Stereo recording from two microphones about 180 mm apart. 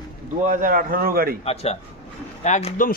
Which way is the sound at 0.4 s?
45° right (ahead or behind).